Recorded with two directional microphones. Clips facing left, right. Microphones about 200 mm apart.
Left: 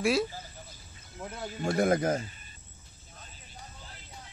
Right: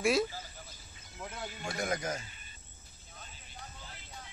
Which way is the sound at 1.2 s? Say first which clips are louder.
Left 7 dB; 35° left (ahead or behind).